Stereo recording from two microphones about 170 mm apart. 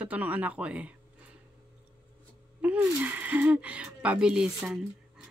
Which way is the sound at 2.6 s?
10° right (ahead or behind).